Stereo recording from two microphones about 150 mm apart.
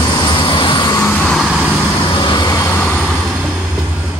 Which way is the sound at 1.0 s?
10° left (ahead or behind).